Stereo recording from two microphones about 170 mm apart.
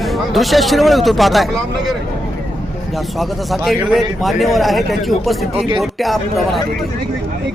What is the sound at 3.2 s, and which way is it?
Speech, centre (ahead or behind).